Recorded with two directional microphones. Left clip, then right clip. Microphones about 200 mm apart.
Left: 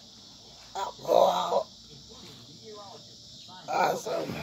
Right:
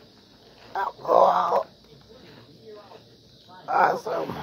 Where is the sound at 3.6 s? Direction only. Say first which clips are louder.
Right 6 dB; 10° right (ahead or behind).